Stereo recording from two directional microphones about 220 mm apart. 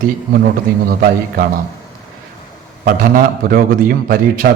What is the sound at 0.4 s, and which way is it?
A man's voice, 40° right (ahead or behind).